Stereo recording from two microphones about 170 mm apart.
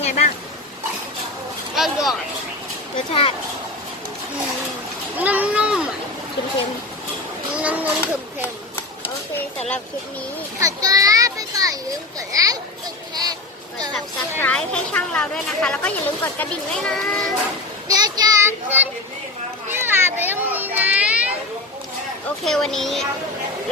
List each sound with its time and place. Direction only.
0.0 s speech: 40° left (ahead or behind)
1.7 s speech: centre (ahead or behind)
3.1 s speech: 35° left (ahead or behind)
5.1 s a sound: 10° right (ahead or behind)
7.5 s a child's voice: 10° right (ahead or behind)
8.7 s a sound: 10° left (ahead or behind)
10.6 s a child's voice: 20° right (ahead or behind)
13.9 s a woman's voice: 10° left (ahead or behind)
17.8 s child singing: 20° right (ahead or behind)
19.7 s children playing: 15° right (ahead or behind)
22.4 s a woman's voice: centre (ahead or behind)